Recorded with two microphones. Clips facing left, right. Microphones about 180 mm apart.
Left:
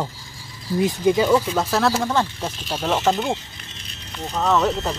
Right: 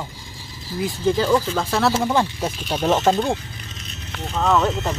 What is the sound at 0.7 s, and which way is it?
Speech, 20° left (ahead or behind).